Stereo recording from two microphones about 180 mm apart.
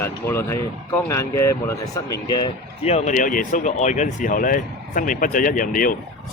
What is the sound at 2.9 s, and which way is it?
Speech, 40° left (ahead or behind).